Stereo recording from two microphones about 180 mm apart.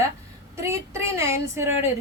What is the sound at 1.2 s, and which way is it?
Speech, 15° right (ahead or behind).